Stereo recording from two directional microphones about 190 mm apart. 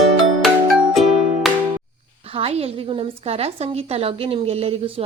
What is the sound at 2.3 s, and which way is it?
A woman's voice, 30° right (ahead or behind).